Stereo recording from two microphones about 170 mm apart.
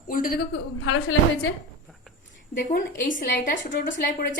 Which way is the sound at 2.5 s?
55° left (ahead or behind).